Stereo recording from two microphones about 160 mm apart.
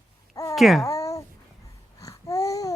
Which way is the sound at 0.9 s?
20° left (ahead or behind).